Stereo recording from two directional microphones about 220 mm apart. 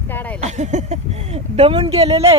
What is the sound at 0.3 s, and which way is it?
Speech, 30° right (ahead or behind).